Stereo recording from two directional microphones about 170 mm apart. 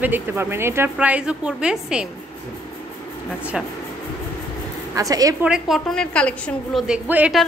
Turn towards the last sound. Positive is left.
turn(degrees=-10)  # may be behind; listen again after turning